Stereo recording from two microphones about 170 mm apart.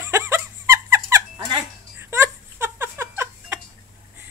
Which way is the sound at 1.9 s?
15° right (ahead or behind).